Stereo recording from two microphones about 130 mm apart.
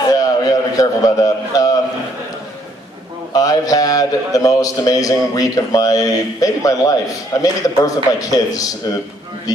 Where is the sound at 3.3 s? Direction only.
30° left (ahead or behind).